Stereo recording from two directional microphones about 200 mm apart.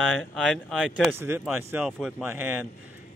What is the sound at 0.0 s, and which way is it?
Speech, centre (ahead or behind).